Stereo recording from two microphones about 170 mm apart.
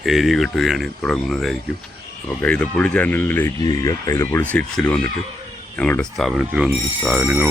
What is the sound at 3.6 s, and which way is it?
Speech, 20° left (ahead or behind).